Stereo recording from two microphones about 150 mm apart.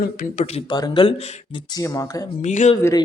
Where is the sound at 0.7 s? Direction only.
30° left (ahead or behind).